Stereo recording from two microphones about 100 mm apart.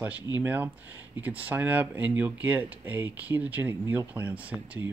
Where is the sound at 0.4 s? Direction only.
15° right (ahead or behind).